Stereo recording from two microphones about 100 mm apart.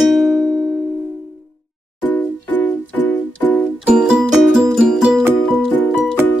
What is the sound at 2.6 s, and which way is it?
Music, 20° left (ahead or behind).